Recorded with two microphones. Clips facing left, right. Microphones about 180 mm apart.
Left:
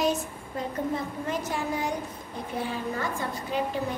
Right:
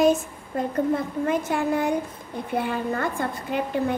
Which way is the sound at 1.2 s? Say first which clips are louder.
Right 8 dB; 55° right (ahead or behind).